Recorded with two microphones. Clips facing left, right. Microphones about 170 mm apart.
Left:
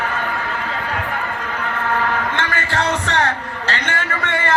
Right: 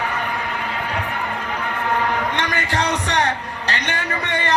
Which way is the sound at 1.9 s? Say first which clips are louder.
Even; 15° right (ahead or behind).